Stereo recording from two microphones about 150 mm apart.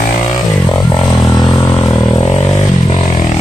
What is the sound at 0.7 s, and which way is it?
Music, 30° left (ahead or behind).